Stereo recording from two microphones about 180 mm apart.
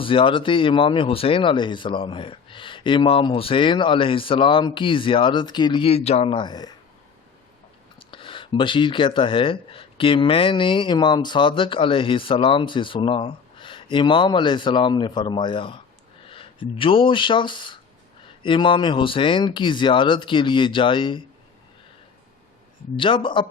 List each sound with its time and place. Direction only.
0.0 s speech: 30° left (ahead or behind)
7.9 s speech: 30° left (ahead or behind)
23.0 s speech: 30° left (ahead or behind)